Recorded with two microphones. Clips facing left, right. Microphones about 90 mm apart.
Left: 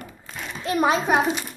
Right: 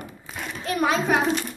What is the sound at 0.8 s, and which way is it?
Speech, 30° left (ahead or behind).